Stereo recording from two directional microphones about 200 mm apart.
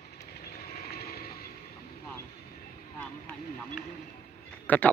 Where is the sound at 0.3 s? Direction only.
50° left (ahead or behind).